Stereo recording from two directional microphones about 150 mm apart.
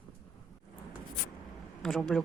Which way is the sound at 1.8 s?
Centre (ahead or behind).